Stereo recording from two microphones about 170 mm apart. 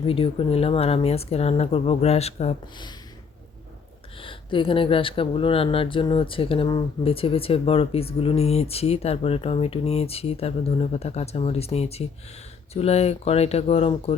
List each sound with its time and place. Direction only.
0.0 s speech: 35° left (ahead or behind)
4.2 s speech: 30° left (ahead or behind)